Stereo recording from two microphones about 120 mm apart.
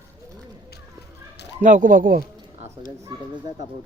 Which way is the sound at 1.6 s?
90° right.